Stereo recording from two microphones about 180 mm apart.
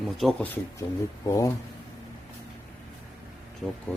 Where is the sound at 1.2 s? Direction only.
20° left (ahead or behind).